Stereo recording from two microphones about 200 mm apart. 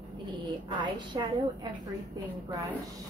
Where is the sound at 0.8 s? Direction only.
20° right (ahead or behind).